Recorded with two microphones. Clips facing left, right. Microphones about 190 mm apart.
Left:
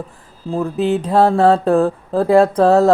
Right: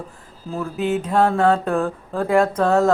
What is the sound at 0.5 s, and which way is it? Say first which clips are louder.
Speech: left 5 dB; 35° left (ahead or behind).